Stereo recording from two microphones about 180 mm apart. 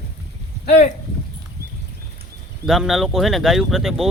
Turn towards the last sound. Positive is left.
turn(degrees=0)  # may be behind; listen again after turning